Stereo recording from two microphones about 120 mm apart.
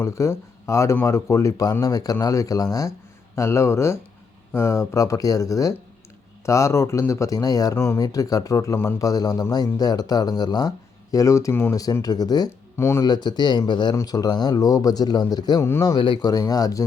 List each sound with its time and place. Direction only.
0.0 s speech: 25° left (ahead or behind)
12.7 s speech: 25° left (ahead or behind)
13.1 s speech: 35° left (ahead or behind)
16.0 s speech: 40° left (ahead or behind)